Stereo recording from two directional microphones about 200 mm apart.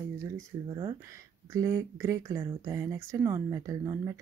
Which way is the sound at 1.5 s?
15° right (ahead or behind).